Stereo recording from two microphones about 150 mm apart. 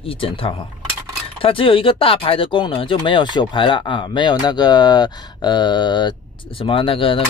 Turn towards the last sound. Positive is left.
turn(degrees=35)  # may be behind; listen again after turning